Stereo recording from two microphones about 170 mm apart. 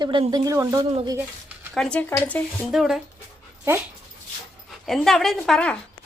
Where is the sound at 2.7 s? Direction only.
Centre (ahead or behind).